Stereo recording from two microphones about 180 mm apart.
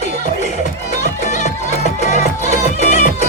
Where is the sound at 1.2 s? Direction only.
40° left (ahead or behind).